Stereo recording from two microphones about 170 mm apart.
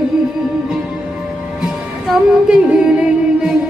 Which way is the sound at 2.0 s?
5° right (ahead or behind).